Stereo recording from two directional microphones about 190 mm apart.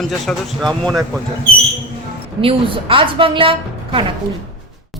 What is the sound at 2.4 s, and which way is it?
A woman's voice, 25° right (ahead or behind).